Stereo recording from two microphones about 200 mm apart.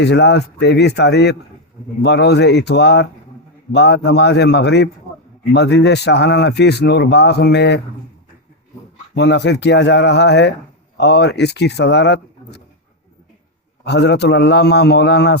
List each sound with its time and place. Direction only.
0.0 s speech: 60° left (ahead or behind)
9.1 s speech: 60° left (ahead or behind)
13.8 s speech: 55° left (ahead or behind)